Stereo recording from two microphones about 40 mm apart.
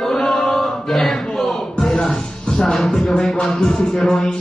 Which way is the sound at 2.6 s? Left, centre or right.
Centre.